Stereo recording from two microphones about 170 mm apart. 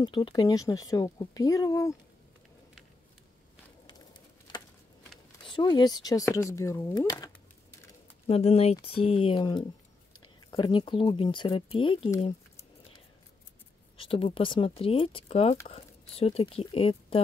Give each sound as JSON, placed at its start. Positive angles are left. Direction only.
{"t": 0.0, "sound": "speech", "side_deg": 25}
{"t": 5.5, "sound": "speech", "side_deg": 25}
{"t": 8.3, "sound": "speech", "side_deg": 35}
{"t": 12.2, "sound": "keys jangling", "side_deg": 35}
{"t": 13.9, "sound": "speech", "side_deg": 35}